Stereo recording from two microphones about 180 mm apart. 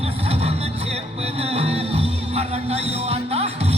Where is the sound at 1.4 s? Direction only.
35° right (ahead or behind).